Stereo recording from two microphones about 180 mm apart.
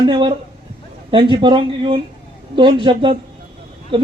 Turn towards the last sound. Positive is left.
turn(degrees=-30)  # may be behind; listen again after turning